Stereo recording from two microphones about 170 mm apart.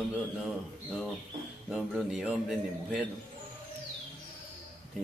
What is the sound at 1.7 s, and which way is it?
Speech, 5° right (ahead or behind).